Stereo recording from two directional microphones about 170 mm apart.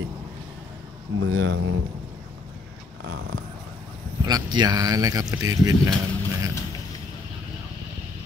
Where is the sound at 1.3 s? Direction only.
90° right.